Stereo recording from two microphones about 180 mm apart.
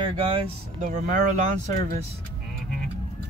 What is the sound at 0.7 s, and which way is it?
Speech, 45° right (ahead or behind).